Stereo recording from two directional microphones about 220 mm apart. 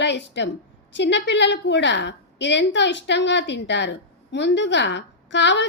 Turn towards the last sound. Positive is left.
turn(degrees=55)  # may be behind; listen again after turning